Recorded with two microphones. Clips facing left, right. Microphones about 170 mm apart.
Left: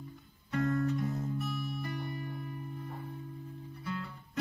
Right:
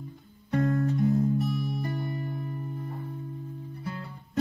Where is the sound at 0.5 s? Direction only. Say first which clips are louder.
Right 5 dB; 40° right (ahead or behind).